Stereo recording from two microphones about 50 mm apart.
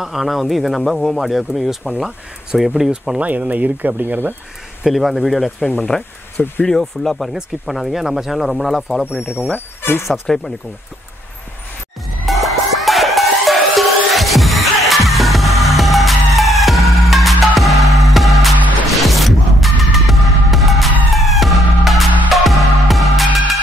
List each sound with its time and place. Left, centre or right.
0.0 s speech: centre
3.2 s speech: right
4.8 s speech: centre
5.9 s speech: centre
9.3 s speech: left
10.2 s speech: centre
12.3 s music: centre